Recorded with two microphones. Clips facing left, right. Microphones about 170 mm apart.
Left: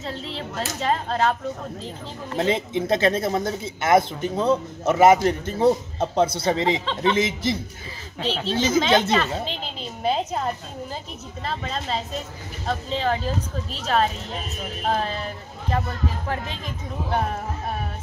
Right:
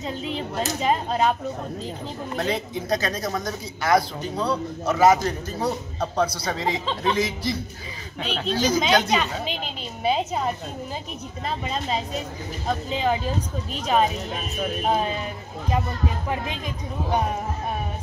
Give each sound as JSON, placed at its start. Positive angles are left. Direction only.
{"t": 0.4, "sound": "speech", "side_deg": -10}
{"t": 2.3, "sound": "speech", "side_deg": 20}
{"t": 9.1, "sound": "speech", "side_deg": -10}